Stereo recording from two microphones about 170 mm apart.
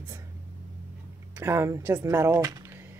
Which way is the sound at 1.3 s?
15° right (ahead or behind).